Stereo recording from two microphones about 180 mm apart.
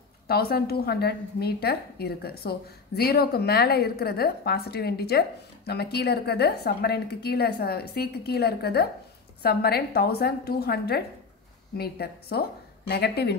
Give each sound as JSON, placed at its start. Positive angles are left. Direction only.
{"t": 0.3, "sound": "a woman's voice", "side_deg": 60}